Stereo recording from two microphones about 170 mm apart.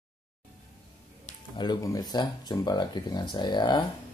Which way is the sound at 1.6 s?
25° left (ahead or behind).